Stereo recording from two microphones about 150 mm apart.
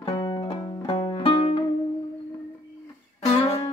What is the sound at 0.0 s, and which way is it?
Music, 35° left (ahead or behind).